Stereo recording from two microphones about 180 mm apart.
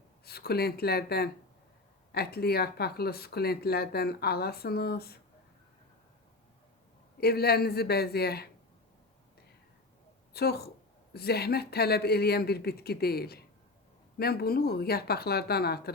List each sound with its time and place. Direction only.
0.3 s speech: 60° left (ahead or behind)
7.2 s speech: 60° left (ahead or behind)
10.3 s speech: 60° left (ahead or behind)